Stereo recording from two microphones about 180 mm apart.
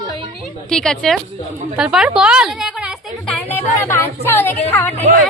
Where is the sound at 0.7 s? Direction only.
5° left (ahead or behind).